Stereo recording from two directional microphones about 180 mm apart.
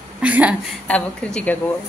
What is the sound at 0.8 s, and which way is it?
Speech, 5° left (ahead or behind).